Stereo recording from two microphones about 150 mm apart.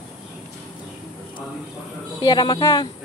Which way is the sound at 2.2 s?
30° left (ahead or behind).